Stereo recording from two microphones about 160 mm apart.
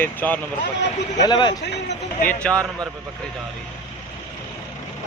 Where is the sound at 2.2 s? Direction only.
10° left (ahead or behind).